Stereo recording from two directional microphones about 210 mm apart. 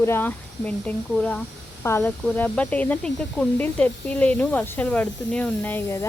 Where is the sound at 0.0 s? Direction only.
10° left (ahead or behind).